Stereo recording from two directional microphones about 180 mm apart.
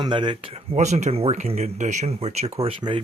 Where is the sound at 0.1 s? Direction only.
25° right (ahead or behind).